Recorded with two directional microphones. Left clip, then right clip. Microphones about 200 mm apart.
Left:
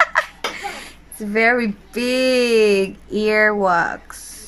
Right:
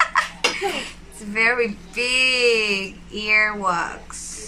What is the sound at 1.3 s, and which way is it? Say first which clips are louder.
Speech: left 3 dB; 40° left (ahead or behind).